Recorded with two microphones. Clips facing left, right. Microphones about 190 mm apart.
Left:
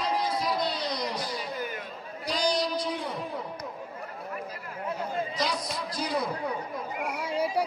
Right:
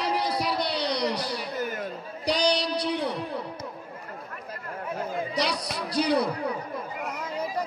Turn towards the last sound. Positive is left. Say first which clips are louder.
# left 3 dB
turn(degrees=10)  # may be behind; listen again after turning